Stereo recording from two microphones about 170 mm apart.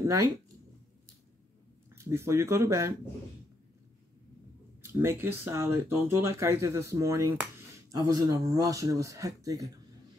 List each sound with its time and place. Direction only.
0.0 s speech: 20° right (ahead or behind)
2.0 s speech: 15° right (ahead or behind)
4.8 s speech: 15° right (ahead or behind)